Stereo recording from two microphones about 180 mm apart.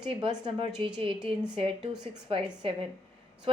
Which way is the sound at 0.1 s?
30° right (ahead or behind).